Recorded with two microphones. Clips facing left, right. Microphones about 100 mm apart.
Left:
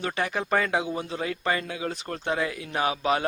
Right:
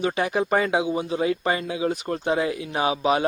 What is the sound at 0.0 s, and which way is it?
Speech, 20° right (ahead or behind).